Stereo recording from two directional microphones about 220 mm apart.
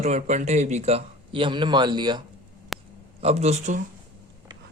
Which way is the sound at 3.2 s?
30° right (ahead or behind).